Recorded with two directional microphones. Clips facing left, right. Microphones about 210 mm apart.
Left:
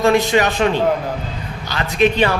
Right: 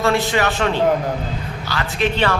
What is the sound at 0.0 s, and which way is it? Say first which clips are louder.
A man's voice: left 4 dB; 15° left (ahead or behind).